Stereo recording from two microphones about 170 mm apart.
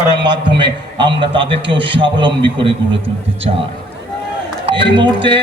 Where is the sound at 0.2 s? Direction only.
30° right (ahead or behind).